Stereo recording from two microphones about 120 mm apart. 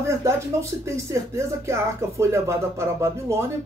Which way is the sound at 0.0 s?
25° right (ahead or behind).